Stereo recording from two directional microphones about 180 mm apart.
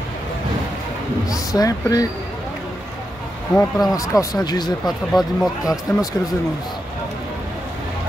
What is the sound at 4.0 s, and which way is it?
Speech, 20° left (ahead or behind).